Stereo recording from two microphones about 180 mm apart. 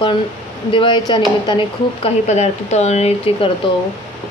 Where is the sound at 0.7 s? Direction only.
25° left (ahead or behind).